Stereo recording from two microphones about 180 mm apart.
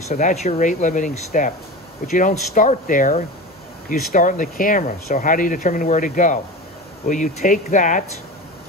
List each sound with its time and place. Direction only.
0.1 s speech: 40° left (ahead or behind)